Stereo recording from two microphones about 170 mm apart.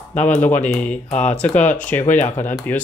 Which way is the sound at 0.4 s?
10° left (ahead or behind).